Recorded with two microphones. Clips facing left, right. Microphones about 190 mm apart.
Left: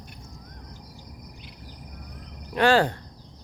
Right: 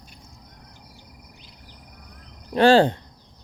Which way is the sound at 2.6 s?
30° right (ahead or behind).